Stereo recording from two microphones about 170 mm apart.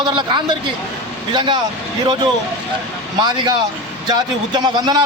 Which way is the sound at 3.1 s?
25° right (ahead or behind).